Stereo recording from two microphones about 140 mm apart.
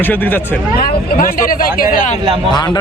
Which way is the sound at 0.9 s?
90° left.